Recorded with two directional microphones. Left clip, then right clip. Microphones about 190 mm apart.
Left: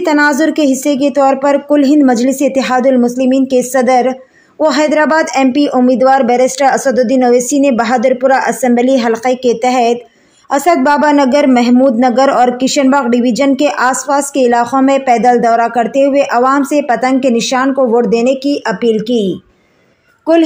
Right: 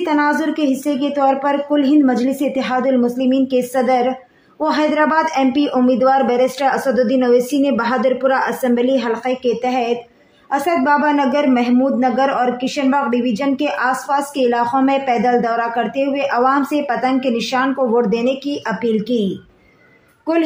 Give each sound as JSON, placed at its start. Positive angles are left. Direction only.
{"t": 0.0, "sound": "a man's voice", "side_deg": 40}